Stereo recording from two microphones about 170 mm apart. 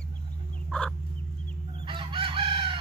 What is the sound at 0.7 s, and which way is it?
Fowl, 5° left (ahead or behind).